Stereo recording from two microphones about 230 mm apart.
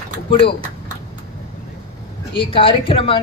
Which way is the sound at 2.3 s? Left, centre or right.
Left.